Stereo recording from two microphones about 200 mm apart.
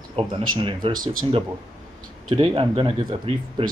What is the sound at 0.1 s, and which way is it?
A man's voice, 25° right (ahead or behind).